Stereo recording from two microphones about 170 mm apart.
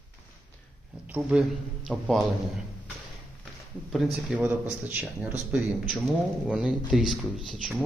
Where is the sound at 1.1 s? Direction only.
5° right (ahead or behind).